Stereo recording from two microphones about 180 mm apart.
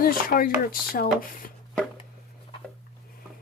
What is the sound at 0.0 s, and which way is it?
Speech, 50° left (ahead or behind).